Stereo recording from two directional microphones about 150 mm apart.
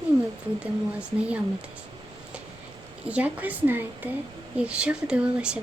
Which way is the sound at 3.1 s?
10° right (ahead or behind).